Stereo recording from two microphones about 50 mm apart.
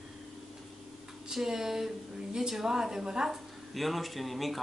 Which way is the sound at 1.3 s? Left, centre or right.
Centre.